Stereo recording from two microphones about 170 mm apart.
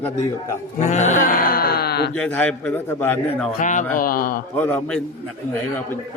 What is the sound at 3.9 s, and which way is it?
Speech, 55° left (ahead or behind).